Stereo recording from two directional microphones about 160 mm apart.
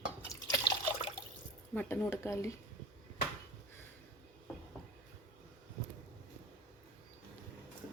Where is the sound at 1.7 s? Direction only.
10° left (ahead or behind).